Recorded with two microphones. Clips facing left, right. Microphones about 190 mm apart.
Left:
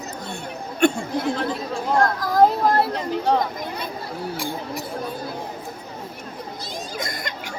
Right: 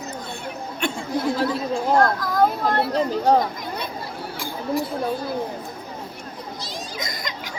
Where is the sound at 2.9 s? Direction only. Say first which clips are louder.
Right 3 dB; 40° right (ahead or behind).